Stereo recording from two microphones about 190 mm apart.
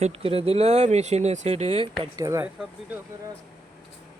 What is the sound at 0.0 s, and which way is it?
Speech, 30° right (ahead or behind).